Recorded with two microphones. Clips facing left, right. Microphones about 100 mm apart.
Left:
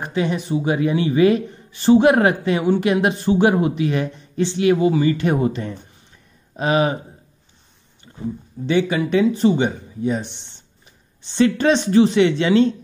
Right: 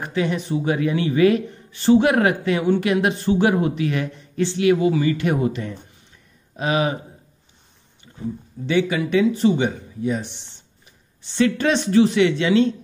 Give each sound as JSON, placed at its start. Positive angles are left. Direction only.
{"t": 0.0, "sound": "speech", "side_deg": 25}
{"t": 8.6, "sound": "speech", "side_deg": 30}
{"t": 11.3, "sound": "speech", "side_deg": 30}